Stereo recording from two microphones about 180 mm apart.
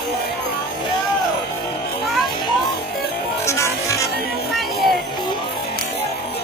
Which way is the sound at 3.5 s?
15° left (ahead or behind).